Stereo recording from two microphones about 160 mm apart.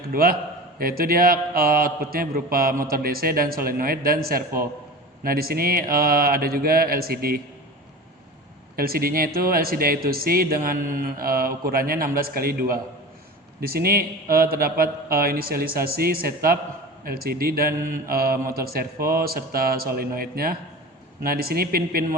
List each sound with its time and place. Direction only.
0.1 s a man's voice: 65° right (ahead or behind)
8.7 s speech: 65° right (ahead or behind)